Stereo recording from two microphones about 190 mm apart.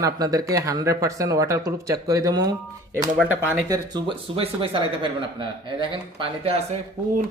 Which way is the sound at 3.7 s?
20° right (ahead or behind).